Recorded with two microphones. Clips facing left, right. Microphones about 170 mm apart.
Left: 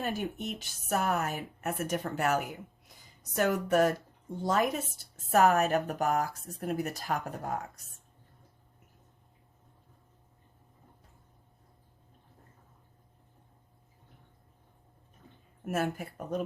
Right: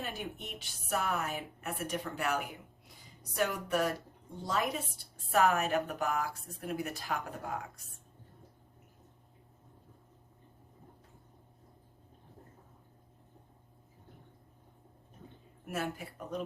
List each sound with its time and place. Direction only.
0.0 s a woman's voice: 45° left (ahead or behind)
15.6 s a woman's voice: 45° left (ahead or behind)